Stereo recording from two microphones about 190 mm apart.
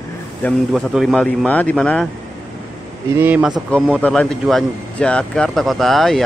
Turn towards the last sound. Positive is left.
turn(degrees=0)  # may be behind; listen again after turning